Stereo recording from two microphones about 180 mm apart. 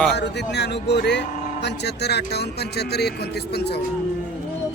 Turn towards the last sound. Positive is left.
turn(degrees=65)  # may be behind; listen again after turning